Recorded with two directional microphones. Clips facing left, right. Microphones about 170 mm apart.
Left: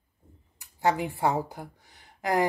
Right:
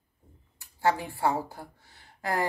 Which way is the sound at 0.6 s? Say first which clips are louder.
Left 1 dB; 20° left (ahead or behind).